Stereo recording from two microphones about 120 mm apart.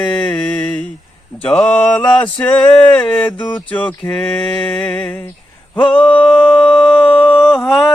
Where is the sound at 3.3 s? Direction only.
40° left (ahead or behind).